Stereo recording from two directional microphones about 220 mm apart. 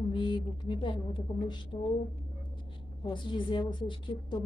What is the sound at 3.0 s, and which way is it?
Speech, 20° left (ahead or behind).